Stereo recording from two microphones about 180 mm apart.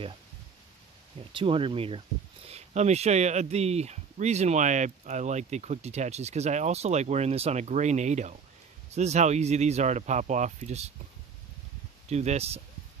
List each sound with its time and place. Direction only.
1.3 s speech: 30° right (ahead or behind)
12.1 s speech: 35° right (ahead or behind)